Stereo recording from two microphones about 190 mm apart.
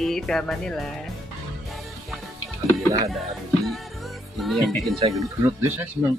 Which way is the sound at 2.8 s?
15° right (ahead or behind).